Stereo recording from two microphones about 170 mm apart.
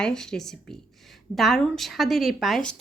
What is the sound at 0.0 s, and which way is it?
A woman's voice, 5° left (ahead or behind).